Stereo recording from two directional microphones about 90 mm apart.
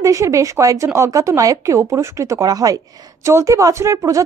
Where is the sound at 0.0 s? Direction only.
35° right (ahead or behind).